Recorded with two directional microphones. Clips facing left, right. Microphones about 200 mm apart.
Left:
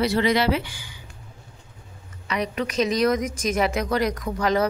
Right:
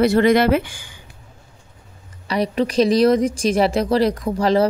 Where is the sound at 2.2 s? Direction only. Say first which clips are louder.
Right 6 dB; 35° right (ahead or behind).